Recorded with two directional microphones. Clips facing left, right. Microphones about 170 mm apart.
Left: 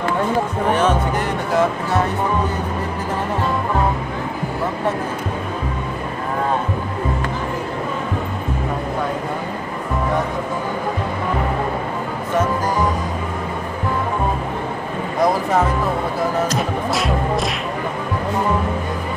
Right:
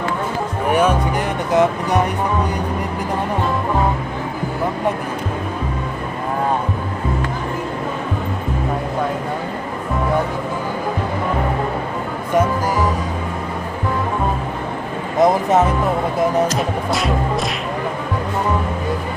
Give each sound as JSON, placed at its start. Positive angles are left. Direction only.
{"t": 0.7, "sound": "music", "side_deg": -10}
{"t": 15.1, "sound": "speech", "side_deg": -20}
{"t": 16.5, "sound": "music", "side_deg": 0}